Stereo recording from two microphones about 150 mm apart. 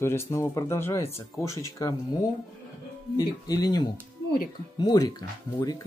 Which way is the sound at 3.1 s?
25° left (ahead or behind).